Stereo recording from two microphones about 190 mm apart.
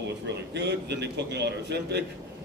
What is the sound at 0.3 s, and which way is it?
A man's voice, 65° right (ahead or behind).